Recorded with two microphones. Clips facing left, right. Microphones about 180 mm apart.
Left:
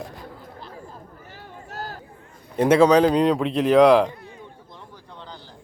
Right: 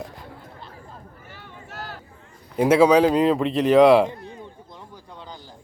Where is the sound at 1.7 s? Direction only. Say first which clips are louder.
Left 3 dB; 40° left (ahead or behind).